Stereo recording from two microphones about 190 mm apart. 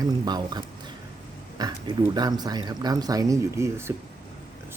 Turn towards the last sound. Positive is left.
turn(degrees=-15)  # may be behind; listen again after turning